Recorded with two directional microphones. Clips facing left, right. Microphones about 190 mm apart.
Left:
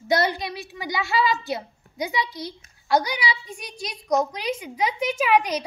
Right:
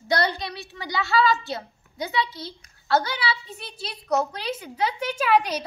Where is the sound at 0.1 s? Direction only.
20° left (ahead or behind).